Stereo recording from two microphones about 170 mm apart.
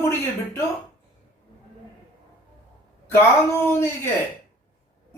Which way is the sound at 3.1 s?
15° left (ahead or behind).